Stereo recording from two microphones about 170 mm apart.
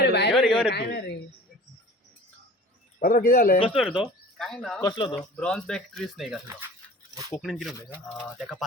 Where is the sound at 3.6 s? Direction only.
5° right (ahead or behind).